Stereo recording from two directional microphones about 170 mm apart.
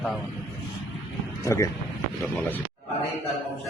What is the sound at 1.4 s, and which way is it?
Speech, 15° left (ahead or behind).